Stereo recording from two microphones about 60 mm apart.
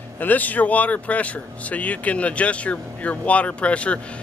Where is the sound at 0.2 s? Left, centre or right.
Left.